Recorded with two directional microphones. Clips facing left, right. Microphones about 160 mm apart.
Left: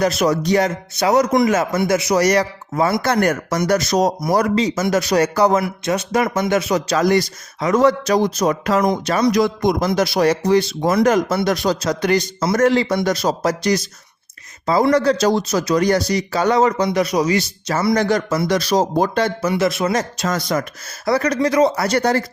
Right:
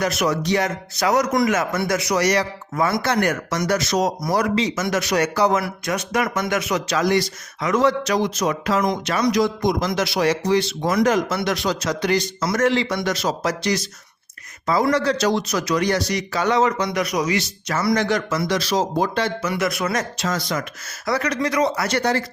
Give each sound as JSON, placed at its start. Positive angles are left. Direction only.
{"t": 0.0, "sound": "speech", "side_deg": 35}
{"t": 0.9, "sound": "speech", "side_deg": 25}
{"t": 2.1, "sound": "speech", "side_deg": 40}
{"t": 2.7, "sound": "speech", "side_deg": 25}
{"t": 3.0, "sound": "speech", "side_deg": 45}
{"t": 5.3, "sound": "speech", "side_deg": 45}
{"t": 5.5, "sound": "speech", "side_deg": 25}
{"t": 9.4, "sound": "speech", "side_deg": 55}
{"t": 9.8, "sound": "speech", "side_deg": 40}
{"t": 12.4, "sound": "speech", "side_deg": 25}
{"t": 12.6, "sound": "speech", "side_deg": 40}
{"t": 17.9, "sound": "speech", "side_deg": 40}
{"t": 19.4, "sound": "speech", "side_deg": 30}
{"t": 20.1, "sound": "speech", "side_deg": 45}